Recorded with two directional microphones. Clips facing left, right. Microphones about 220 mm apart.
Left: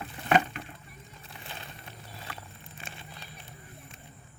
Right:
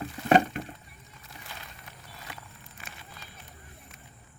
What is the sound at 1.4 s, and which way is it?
Walk, 30° left (ahead or behind).